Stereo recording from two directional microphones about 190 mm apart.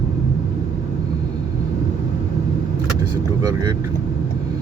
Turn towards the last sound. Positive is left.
turn(degrees=-20)  # may be behind; listen again after turning